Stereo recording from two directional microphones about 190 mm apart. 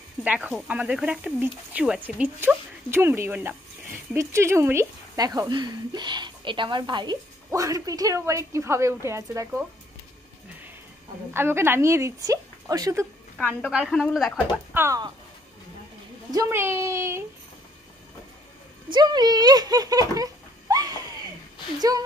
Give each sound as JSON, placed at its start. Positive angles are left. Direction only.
{"t": 0.2, "sound": "speech", "side_deg": -5}
{"t": 11.3, "sound": "speech", "side_deg": -10}
{"t": 13.4, "sound": "a woman's voice", "side_deg": 5}
{"t": 14.8, "sound": "speech", "side_deg": -15}
{"t": 16.3, "sound": "speech", "side_deg": -15}
{"t": 18.9, "sound": "speech", "side_deg": -20}
{"t": 21.7, "sound": "speech", "side_deg": -20}